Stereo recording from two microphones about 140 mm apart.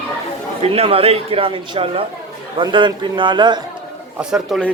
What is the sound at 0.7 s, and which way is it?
A man's voice, 45° right (ahead or behind).